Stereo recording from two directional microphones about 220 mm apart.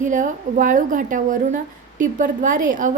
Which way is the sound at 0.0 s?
35° right (ahead or behind).